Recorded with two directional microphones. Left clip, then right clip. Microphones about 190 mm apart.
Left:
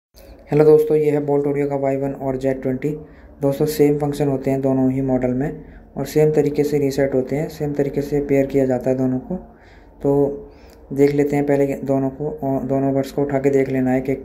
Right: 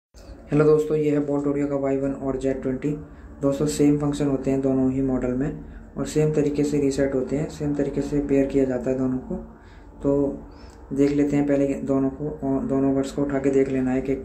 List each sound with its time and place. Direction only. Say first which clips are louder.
0.5 s speech: left 6 dB; 25° left (ahead or behind)
11.0 s speech: left 5 dB; 25° left (ahead or behind)